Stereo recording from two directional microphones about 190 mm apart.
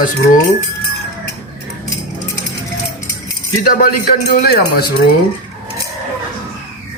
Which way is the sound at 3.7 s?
50° left (ahead or behind).